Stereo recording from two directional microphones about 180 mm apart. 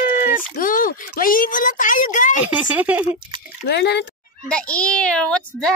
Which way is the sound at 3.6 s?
65° left (ahead or behind).